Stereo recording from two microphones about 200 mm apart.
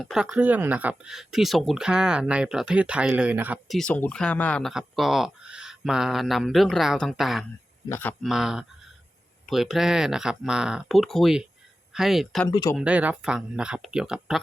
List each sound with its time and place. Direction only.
0.0 s speech: centre (ahead or behind)
7.9 s speech: 10° left (ahead or behind)
8.2 s speech: centre (ahead or behind)
12.5 s speech: 20° left (ahead or behind)
12.7 s speech: 5° right (ahead or behind)